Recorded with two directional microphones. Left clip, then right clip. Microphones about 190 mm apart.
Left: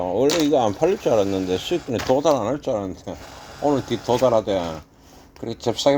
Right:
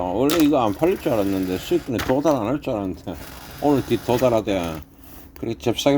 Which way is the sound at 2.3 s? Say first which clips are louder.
Left 1 dB; 40° right (ahead or behind).